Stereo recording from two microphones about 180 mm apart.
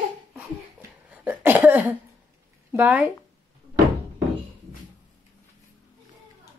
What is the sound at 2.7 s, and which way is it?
Speech, 10° right (ahead or behind).